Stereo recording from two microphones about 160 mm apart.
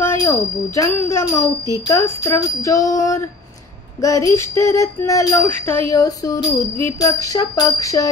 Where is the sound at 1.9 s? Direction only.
15° left (ahead or behind).